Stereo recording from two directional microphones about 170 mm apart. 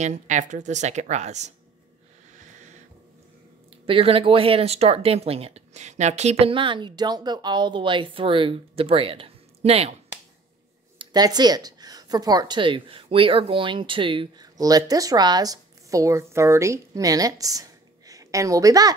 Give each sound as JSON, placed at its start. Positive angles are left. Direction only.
{"t": 0.0, "sound": "speech", "side_deg": -45}
{"t": 2.3, "sound": "music", "side_deg": -45}
{"t": 3.8, "sound": "speech", "side_deg": -35}
{"t": 11.0, "sound": "speech", "side_deg": -25}